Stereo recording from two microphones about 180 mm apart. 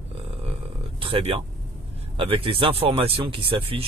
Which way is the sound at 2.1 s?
30° right (ahead or behind).